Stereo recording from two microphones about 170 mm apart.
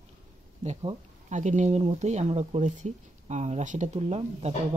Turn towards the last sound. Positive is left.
turn(degrees=-40)  # may be behind; listen again after turning